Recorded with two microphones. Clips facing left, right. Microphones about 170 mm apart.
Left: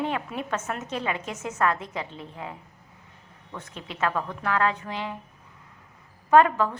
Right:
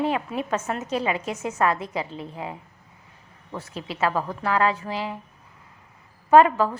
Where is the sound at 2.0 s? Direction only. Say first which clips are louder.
Right 5 dB; 35° right (ahead or behind).